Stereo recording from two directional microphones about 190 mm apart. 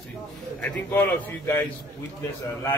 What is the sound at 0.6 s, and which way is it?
Speech, 10° left (ahead or behind).